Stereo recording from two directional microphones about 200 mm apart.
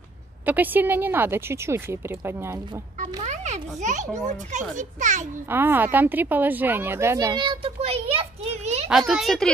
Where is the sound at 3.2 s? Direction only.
35° right (ahead or behind).